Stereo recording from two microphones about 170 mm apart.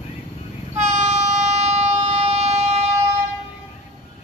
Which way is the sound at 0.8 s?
45° right (ahead or behind).